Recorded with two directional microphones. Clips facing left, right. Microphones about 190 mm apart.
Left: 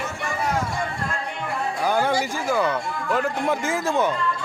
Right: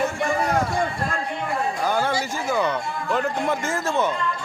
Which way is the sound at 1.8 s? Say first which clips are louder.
Left 4 dB; 15° left (ahead or behind).